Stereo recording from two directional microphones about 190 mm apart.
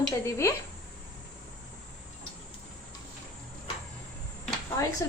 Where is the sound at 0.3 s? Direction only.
15° left (ahead or behind).